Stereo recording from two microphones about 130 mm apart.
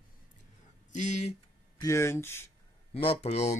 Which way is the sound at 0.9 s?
65° left (ahead or behind).